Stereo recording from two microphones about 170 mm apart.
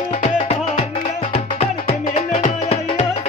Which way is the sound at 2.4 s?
45° left (ahead or behind).